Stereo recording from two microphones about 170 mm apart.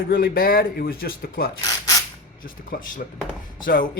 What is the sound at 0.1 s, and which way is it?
Speech, 60° left (ahead or behind).